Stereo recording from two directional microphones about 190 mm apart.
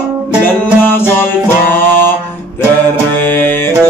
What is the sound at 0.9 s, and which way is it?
Music, 10° left (ahead or behind).